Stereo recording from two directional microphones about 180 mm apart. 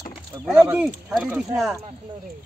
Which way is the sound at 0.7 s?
5° right (ahead or behind).